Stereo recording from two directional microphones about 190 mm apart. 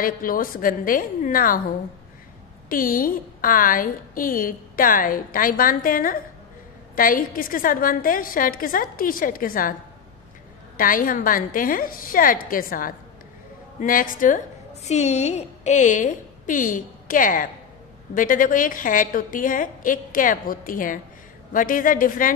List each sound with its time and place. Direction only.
0.0 s a woman's voice: 45° left (ahead or behind)
2.7 s a woman's voice: 50° left (ahead or behind)
10.8 s a woman's voice: 45° left (ahead or behind)